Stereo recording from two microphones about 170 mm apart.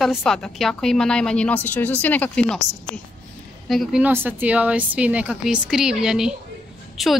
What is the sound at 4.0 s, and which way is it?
A woman's voice, 10° right (ahead or behind).